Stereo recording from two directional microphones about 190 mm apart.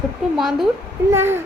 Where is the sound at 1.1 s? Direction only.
10° right (ahead or behind).